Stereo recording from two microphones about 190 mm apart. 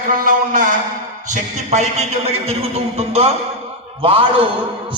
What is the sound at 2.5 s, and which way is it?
A man's voice, 30° right (ahead or behind).